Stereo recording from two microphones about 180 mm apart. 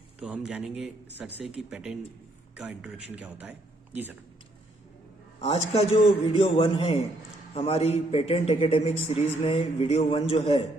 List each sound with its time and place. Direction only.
0.2 s a man's voice: 5° right (ahead or behind)
5.4 s a man's voice: 35° left (ahead or behind)